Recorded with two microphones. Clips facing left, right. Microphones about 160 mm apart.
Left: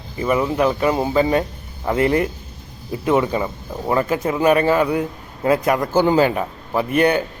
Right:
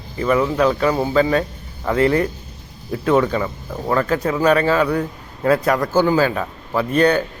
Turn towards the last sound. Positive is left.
turn(degrees=15)  # may be behind; listen again after turning